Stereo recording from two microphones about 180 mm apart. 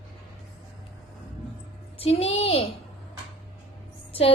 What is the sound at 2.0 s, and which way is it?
Speech, 35° left (ahead or behind).